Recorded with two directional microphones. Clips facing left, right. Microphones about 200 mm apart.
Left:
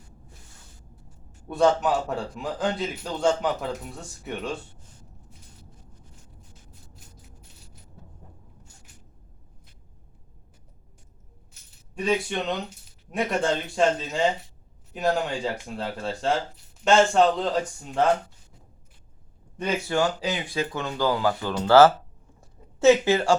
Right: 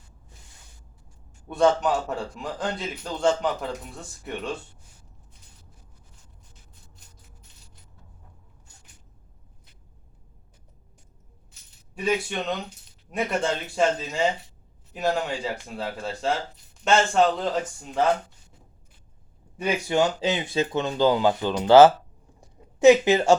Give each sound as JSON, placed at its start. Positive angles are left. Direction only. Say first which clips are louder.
{"t": 1.5, "sound": "a man's voice", "louder": "even", "side_deg": 0}
{"t": 11.9, "sound": "a man's voice", "louder": "left 1 dB", "side_deg": 0}
{"t": 19.5, "sound": "speech", "louder": "right 2 dB", "side_deg": -10}
{"t": 22.4, "sound": "a sound", "louder": "right 3 dB", "side_deg": -15}